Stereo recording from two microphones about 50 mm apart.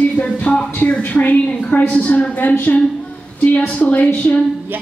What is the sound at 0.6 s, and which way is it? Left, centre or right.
A woman's voice, left.